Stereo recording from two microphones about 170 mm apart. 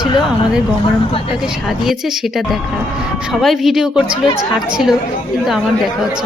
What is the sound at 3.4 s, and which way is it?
Speech, centre (ahead or behind).